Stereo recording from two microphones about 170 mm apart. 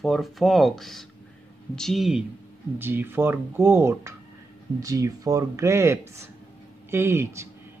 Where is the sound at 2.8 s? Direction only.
15° right (ahead or behind).